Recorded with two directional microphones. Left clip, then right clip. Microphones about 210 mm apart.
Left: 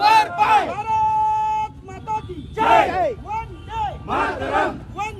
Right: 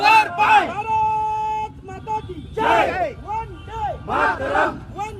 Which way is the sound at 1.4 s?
40° left (ahead or behind).